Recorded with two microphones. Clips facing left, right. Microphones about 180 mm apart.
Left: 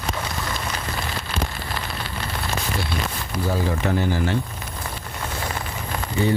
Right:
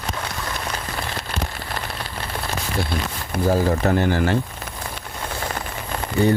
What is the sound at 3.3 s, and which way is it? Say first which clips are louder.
Speech: right 5 dB; 40° right (ahead or behind).